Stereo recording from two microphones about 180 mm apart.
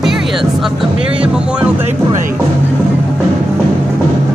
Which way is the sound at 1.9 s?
45° right (ahead or behind).